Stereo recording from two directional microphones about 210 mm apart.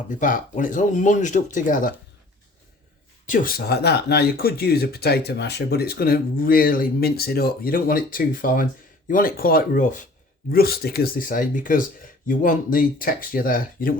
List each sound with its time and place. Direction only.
0.1 s speech: 40° left (ahead or behind)
3.2 s speech: 45° left (ahead or behind)